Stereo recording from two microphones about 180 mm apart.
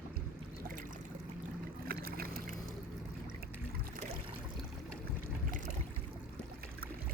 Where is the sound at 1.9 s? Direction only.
55° right (ahead or behind).